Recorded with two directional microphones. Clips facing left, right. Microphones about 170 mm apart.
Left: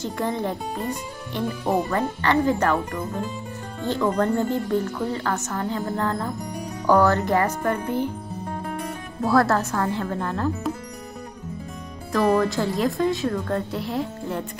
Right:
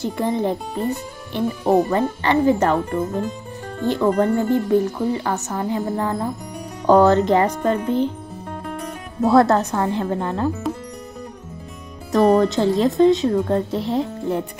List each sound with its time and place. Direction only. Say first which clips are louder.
0.2 s speech: right 5 dB; 20° right (ahead or behind)
1.9 s speech: right 3 dB; 20° right (ahead or behind)
9.2 s speech: right 5 dB; 20° right (ahead or behind)
12.1 s speech: right 5 dB; 25° right (ahead or behind)